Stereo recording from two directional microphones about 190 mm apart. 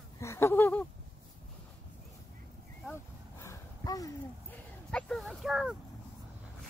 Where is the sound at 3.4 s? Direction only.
15° left (ahead or behind).